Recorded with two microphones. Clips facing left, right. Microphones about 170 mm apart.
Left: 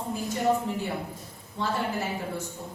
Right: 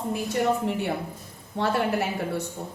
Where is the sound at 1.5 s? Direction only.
70° right (ahead or behind).